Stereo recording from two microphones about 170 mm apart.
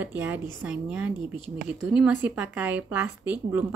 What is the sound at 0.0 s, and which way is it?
Speech, 10° right (ahead or behind).